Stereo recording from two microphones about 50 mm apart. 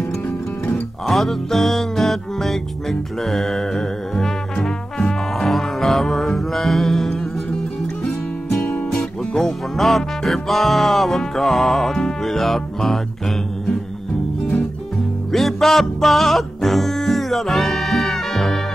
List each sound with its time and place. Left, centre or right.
1.0 s music: centre
15.3 s music: centre